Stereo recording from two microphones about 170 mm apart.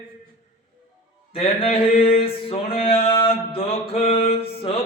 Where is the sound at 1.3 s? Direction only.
35° left (ahead or behind).